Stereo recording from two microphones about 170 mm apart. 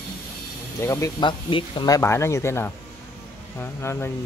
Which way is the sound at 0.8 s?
20° left (ahead or behind).